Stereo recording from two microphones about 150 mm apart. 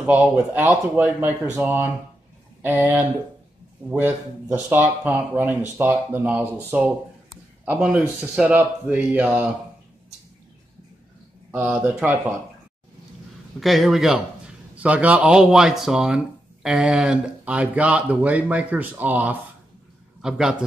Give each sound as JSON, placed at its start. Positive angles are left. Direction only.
{"t": 0.0, "sound": "speech", "side_deg": -10}
{"t": 2.8, "sound": "speech", "side_deg": -15}
{"t": 11.5, "sound": "speech", "side_deg": -10}
{"t": 13.6, "sound": "a man's voice", "side_deg": 0}